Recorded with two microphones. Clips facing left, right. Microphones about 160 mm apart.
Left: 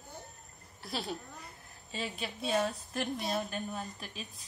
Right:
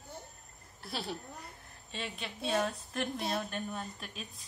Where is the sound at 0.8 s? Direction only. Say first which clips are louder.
Left 1 dB; centre (ahead or behind).